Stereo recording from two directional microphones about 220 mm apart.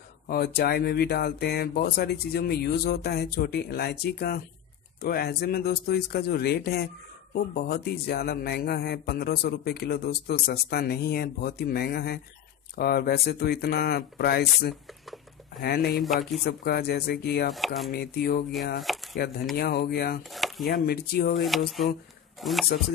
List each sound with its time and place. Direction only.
0.3 s a man's voice: 45° left (ahead or behind)
14.9 s a sound: centre (ahead or behind)
15.6 s a man's voice: 45° left (ahead or behind)
17.5 s speech: centre (ahead or behind)
17.9 s a man's voice: 45° left (ahead or behind)
18.8 s speech: centre (ahead or behind)
19.5 s a man's voice: 45° left (ahead or behind)
20.2 s chopping: centre (ahead or behind)
20.6 s a man's voice: 45° left (ahead or behind)
21.5 s speech: centre (ahead or behind)